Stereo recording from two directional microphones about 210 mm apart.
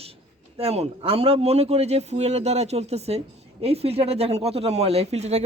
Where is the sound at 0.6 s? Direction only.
30° right (ahead or behind).